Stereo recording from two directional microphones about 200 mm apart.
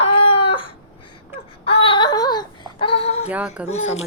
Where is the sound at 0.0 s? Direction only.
30° left (ahead or behind).